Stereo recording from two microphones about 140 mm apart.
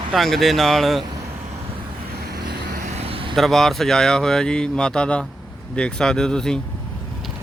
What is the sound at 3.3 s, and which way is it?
Speech, centre (ahead or behind).